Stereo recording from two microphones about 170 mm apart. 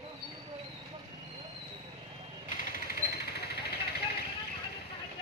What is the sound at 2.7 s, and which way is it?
Vehicle, 70° left (ahead or behind).